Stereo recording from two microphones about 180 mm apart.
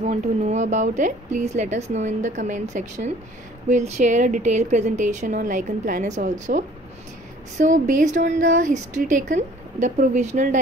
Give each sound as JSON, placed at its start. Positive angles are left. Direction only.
{"t": 0.0, "sound": "a woman's voice", "side_deg": -40}